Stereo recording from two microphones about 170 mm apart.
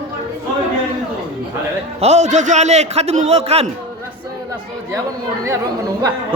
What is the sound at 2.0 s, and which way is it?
Speech, 40° right (ahead or behind).